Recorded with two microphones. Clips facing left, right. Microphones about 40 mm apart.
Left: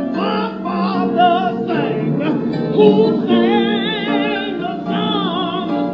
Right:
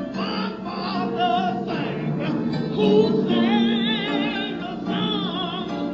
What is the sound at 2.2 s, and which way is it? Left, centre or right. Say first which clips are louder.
Music: left 7 dB; left.